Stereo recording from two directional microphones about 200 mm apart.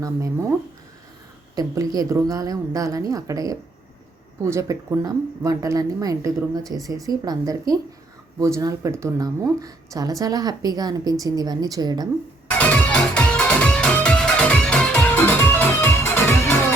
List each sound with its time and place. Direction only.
1.5 s speech: 20° right (ahead or behind)
12.5 s music: 10° left (ahead or behind)